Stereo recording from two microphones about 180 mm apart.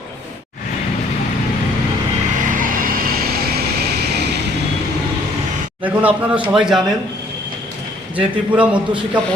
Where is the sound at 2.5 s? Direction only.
50° right (ahead or behind).